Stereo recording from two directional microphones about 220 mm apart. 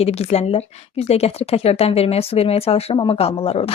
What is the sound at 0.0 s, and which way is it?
A woman's voice, 30° left (ahead or behind).